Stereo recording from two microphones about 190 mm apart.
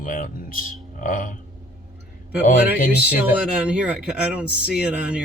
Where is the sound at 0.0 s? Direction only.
45° left (ahead or behind).